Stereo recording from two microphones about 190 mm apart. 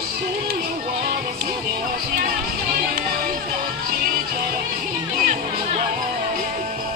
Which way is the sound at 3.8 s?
50° right (ahead or behind).